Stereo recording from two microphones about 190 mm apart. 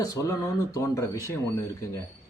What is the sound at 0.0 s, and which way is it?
Speech, 15° left (ahead or behind).